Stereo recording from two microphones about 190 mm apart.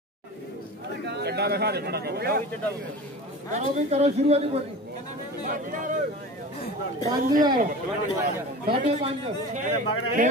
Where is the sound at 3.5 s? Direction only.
35° right (ahead or behind).